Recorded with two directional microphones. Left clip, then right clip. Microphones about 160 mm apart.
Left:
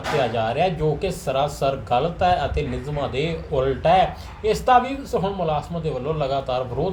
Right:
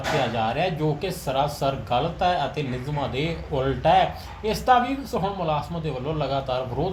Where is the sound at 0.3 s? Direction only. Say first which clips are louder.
Left 3 dB; 20° right (ahead or behind).